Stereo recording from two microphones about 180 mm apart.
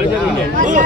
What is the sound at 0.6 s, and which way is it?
Speech, 45° right (ahead or behind).